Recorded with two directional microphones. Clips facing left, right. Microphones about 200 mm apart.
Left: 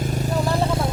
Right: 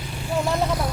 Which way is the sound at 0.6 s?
25° left (ahead or behind).